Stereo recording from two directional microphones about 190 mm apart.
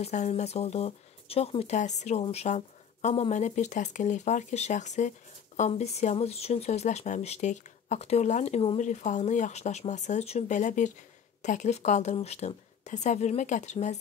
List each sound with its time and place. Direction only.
0.0 s speech: 35° left (ahead or behind)